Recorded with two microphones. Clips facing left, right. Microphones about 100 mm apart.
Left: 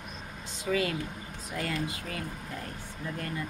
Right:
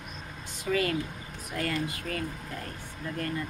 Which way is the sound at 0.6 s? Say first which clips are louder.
Right 1 dB; 15° left (ahead or behind).